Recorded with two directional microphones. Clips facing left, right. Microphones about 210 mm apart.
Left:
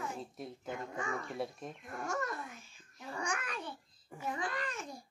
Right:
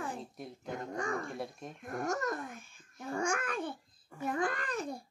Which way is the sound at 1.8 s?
45° right (ahead or behind).